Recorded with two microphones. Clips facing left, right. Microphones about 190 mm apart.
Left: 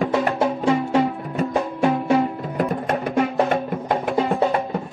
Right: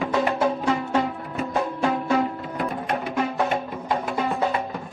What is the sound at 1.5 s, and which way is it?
Music, 20° left (ahead or behind).